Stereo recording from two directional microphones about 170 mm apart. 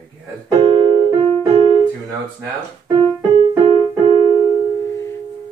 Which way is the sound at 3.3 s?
35° right (ahead or behind).